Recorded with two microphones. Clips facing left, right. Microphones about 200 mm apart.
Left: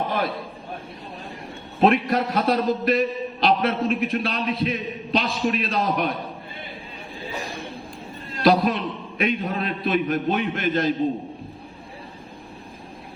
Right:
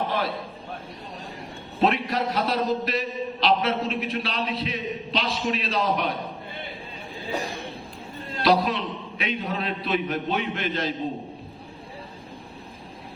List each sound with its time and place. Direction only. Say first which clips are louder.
1.8 s a man's voice: left 4 dB; 50° left (ahead or behind)
8.4 s a man's voice: left 3 dB; 50° left (ahead or behind)